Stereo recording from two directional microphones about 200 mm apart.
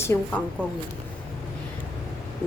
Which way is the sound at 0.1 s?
15° left (ahead or behind).